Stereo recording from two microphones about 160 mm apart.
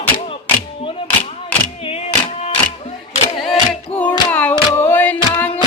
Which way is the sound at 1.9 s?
40° left (ahead or behind).